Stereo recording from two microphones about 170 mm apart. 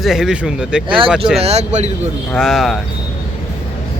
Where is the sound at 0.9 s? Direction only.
30° right (ahead or behind).